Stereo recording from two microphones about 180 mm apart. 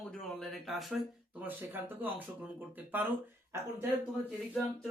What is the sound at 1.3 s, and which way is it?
Speech, 10° right (ahead or behind).